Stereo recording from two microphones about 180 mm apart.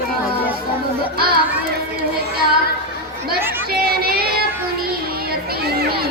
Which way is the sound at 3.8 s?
60° right (ahead or behind).